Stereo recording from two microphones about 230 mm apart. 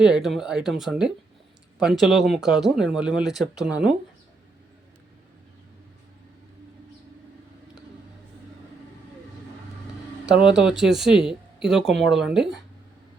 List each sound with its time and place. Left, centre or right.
0.0 s speech: centre
10.5 s speech: centre